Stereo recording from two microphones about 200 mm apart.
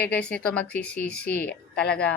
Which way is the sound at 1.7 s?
55° left (ahead or behind).